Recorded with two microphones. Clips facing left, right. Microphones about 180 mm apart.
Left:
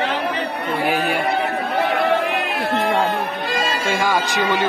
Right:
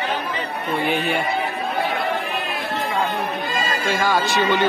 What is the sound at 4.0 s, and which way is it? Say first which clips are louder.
Speech: right 1 dB; 15° left (ahead or behind).